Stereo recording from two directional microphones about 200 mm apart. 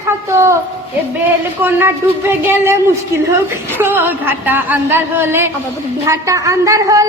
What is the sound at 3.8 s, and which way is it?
A man's voice, 10° right (ahead or behind).